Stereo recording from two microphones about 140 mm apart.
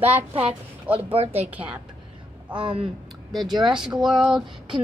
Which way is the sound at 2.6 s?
40° right (ahead or behind).